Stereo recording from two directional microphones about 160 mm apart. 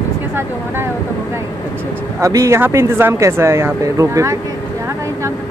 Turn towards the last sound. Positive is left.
turn(degrees=-20)  # may be behind; listen again after turning